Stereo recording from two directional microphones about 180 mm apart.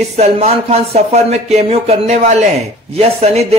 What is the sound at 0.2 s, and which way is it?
A man's voice, 35° right (ahead or behind).